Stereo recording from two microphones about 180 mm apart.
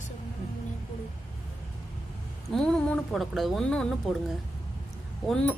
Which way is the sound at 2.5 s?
5° left (ahead or behind).